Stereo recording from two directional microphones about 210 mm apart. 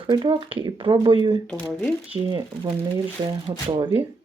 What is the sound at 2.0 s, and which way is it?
Speech, 25° right (ahead or behind).